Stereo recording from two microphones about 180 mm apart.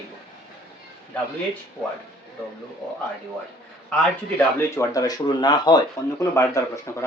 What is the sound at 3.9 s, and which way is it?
Speech, 15° left (ahead or behind).